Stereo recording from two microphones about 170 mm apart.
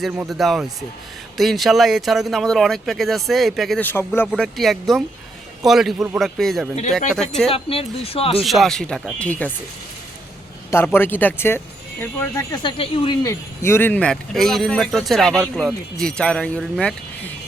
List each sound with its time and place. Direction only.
0.3 s speech: centre (ahead or behind)
3.8 s speech: 15° left (ahead or behind)
4.3 s speech: centre (ahead or behind)
7.5 s speech: 35° left (ahead or behind)
8.4 s speech: centre (ahead or behind)
10.7 s speech: 15° left (ahead or behind)
12.6 s speech: 35° left (ahead or behind); by 17.3 s 5° left (ahead or behind)